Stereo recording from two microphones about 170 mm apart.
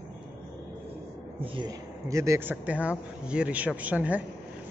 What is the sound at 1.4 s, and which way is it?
Speech, 30° right (ahead or behind).